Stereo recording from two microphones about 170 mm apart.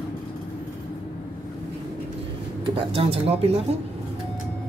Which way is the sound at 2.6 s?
30° right (ahead or behind).